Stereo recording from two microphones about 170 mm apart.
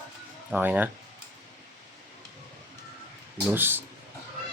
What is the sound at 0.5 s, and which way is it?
Speech, 10° right (ahead or behind).